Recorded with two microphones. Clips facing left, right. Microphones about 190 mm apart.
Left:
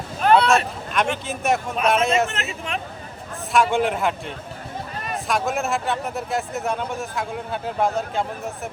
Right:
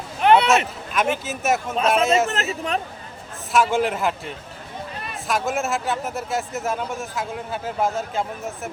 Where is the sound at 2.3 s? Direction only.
35° right (ahead or behind).